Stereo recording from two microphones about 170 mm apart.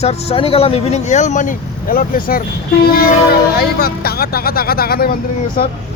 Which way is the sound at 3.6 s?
65° left (ahead or behind).